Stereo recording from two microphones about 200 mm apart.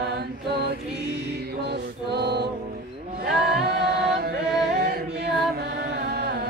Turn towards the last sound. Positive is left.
turn(degrees=-55)  # may be behind; listen again after turning